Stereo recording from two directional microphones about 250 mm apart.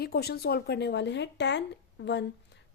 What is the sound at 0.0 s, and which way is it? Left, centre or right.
A woman's voice, left.